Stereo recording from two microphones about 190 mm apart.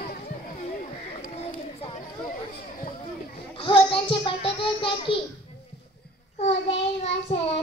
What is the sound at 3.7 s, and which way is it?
A child's voice, 25° left (ahead or behind).